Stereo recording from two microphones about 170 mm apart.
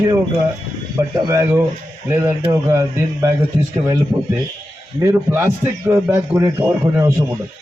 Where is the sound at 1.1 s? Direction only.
15° right (ahead or behind).